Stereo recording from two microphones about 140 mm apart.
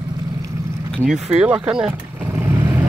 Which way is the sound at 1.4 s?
10° right (ahead or behind).